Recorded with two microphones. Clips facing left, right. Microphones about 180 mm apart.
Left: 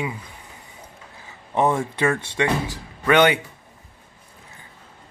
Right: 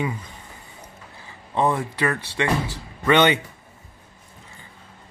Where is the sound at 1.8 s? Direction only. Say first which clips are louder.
Left 3 dB; 25° left (ahead or behind).